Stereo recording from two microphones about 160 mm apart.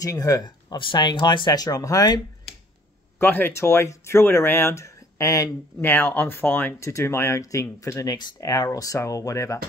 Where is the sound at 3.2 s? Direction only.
15° left (ahead or behind).